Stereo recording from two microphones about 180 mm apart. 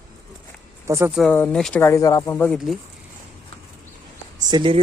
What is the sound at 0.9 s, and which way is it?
Speech, 15° right (ahead or behind).